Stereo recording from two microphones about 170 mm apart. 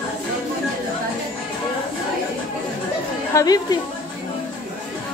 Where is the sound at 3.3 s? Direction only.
20° left (ahead or behind).